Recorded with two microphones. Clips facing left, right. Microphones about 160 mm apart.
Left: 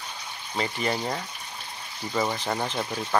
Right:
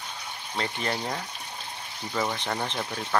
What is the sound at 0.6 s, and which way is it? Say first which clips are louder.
Speech: left 3 dB; centre (ahead or behind).